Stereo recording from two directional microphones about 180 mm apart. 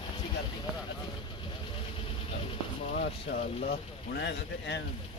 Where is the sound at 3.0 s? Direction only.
55° left (ahead or behind); by 4.8 s 70° left (ahead or behind).